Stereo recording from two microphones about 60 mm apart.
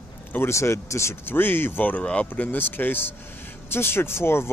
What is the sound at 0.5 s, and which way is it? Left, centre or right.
Speech, left.